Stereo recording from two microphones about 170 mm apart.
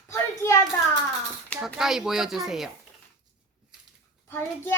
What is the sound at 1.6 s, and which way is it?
A child's voice, 5° right (ahead or behind).